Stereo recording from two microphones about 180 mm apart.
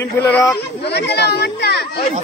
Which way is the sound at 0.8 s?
65° left (ahead or behind).